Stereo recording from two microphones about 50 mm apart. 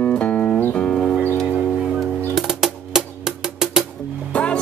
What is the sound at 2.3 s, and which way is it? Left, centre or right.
Music, centre.